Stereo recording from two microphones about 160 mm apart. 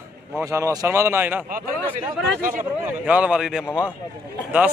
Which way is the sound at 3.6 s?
15° left (ahead or behind).